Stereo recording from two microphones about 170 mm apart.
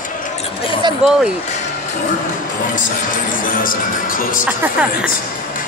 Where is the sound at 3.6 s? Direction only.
55° left (ahead or behind).